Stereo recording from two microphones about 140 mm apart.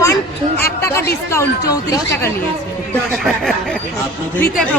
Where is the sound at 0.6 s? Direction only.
20° left (ahead or behind).